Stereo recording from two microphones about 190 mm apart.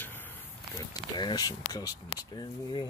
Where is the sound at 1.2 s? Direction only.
20° left (ahead or behind).